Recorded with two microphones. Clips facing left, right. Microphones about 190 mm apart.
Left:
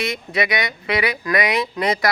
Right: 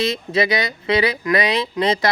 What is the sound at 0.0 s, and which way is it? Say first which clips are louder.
Speech: right 3 dB; 25° right (ahead or behind).